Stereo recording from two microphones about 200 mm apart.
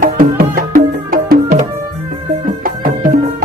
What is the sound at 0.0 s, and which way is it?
Music, 45° right (ahead or behind).